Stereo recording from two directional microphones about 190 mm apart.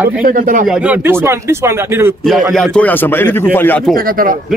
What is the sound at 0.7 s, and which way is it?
Speech, 5° right (ahead or behind).